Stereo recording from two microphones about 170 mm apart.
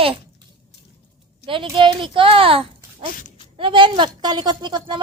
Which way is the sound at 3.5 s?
30° right (ahead or behind).